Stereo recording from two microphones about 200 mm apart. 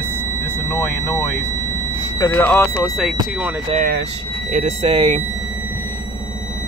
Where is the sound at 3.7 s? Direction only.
45° right (ahead or behind).